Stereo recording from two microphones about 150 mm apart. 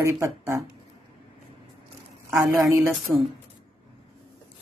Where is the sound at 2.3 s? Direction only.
20° right (ahead or behind).